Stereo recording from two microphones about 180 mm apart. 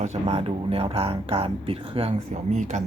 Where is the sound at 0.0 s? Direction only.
35° right (ahead or behind).